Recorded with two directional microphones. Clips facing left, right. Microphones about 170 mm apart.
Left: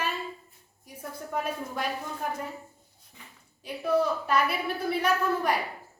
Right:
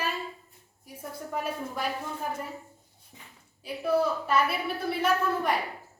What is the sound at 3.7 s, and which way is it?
A woman's voice, 5° right (ahead or behind).